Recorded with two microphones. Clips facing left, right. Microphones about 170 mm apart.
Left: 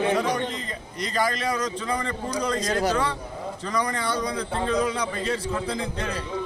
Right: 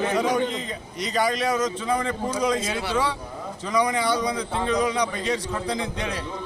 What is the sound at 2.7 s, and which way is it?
Speech, 40° left (ahead or behind).